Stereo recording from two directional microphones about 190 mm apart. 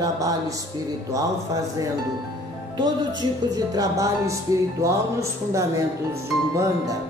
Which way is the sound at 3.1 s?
20° right (ahead or behind).